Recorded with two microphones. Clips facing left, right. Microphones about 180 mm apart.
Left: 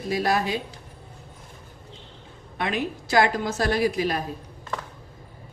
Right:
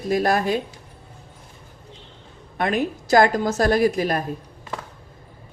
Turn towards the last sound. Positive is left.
turn(degrees=-50)  # may be behind; listen again after turning